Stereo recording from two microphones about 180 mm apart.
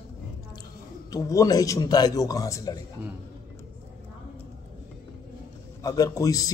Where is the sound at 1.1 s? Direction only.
20° left (ahead or behind).